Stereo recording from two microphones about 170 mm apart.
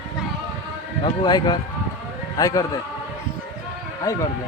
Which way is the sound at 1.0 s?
25° left (ahead or behind).